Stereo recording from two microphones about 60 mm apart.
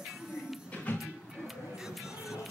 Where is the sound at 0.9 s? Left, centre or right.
Left.